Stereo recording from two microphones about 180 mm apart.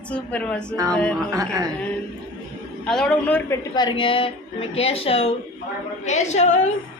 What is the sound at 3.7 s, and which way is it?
A woman's voice, 25° left (ahead or behind).